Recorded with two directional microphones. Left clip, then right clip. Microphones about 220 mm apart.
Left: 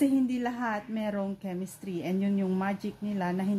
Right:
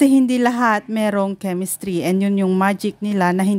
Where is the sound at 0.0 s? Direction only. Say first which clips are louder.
Right 13 dB; 50° right (ahead or behind).